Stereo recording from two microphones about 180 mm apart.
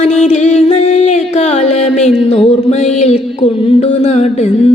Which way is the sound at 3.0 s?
35° left (ahead or behind).